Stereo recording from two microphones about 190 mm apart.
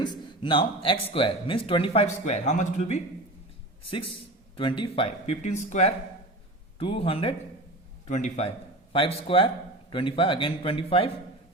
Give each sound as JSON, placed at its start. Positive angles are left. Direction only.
{"t": 0.0, "sound": "speech", "side_deg": 25}
{"t": 4.5, "sound": "a man's voice", "side_deg": 25}
{"t": 8.0, "sound": "a man's voice", "side_deg": 40}